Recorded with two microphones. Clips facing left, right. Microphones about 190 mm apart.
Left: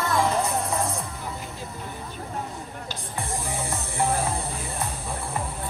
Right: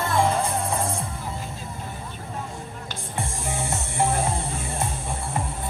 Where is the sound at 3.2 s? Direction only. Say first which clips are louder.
Right 1 dB; 25° right (ahead or behind).